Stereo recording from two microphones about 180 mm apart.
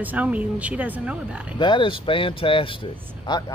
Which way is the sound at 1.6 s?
25° left (ahead or behind).